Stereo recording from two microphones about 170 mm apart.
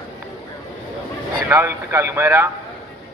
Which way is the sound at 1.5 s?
15° right (ahead or behind).